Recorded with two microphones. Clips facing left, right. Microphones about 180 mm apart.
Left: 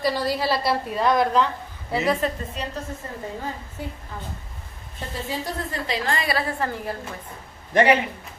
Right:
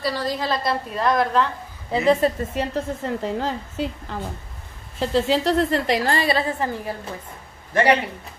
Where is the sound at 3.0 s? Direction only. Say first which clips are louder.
Right 7 dB; 85° right.